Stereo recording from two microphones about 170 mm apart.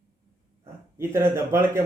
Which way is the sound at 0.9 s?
15° right (ahead or behind).